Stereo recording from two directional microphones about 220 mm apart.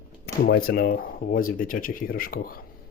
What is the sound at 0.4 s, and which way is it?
Speech, 45° left (ahead or behind).